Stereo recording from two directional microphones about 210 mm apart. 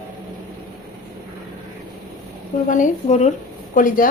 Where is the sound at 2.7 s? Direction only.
35° left (ahead or behind).